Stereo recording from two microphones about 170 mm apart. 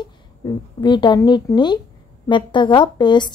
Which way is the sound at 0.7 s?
25° left (ahead or behind).